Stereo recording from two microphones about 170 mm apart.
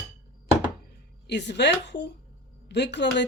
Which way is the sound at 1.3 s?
90° left.